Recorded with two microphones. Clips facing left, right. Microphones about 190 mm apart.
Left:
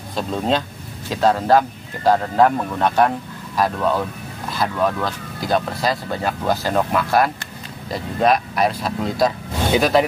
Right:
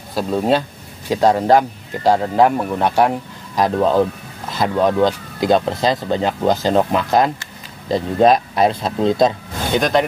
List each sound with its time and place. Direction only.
0.1 s speech: 10° right (ahead or behind)
9.7 s speech: 5° left (ahead or behind)